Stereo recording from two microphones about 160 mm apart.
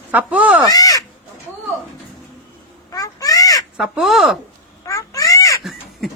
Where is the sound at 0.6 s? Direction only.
25° left (ahead or behind).